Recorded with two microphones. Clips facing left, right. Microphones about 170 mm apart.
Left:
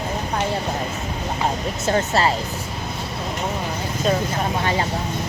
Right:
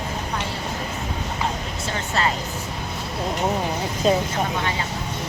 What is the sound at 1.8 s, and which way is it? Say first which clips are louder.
Speech: left 6 dB; 40° left (ahead or behind).